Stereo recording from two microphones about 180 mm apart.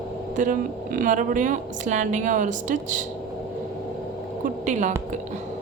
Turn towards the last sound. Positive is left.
turn(degrees=-45)  # may be behind; listen again after turning